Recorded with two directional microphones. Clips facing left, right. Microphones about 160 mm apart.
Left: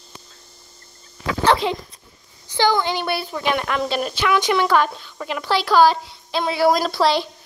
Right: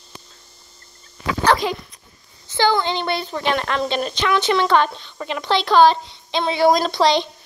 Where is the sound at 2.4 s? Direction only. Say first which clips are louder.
Even; 15° left (ahead or behind).